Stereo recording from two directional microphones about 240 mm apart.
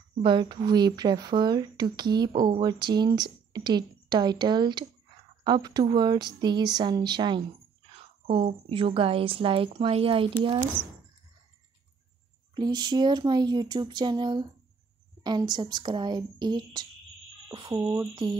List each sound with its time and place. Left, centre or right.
0.2 s a woman's voice: centre
12.5 s speech: centre